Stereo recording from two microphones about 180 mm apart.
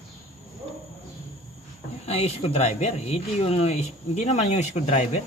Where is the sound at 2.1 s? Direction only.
35° left (ahead or behind).